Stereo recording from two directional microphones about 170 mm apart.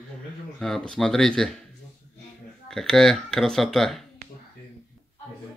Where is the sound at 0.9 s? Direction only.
5° left (ahead or behind).